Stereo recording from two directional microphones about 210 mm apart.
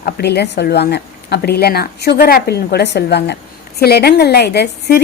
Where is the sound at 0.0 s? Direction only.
50° left (ahead or behind).